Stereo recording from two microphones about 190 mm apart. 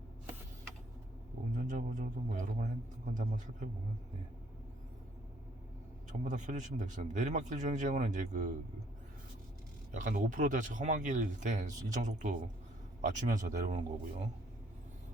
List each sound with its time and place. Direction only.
1.5 s speech: 40° right (ahead or behind)
6.1 s speech: 40° right (ahead or behind)
9.9 s speech: 40° right (ahead or behind)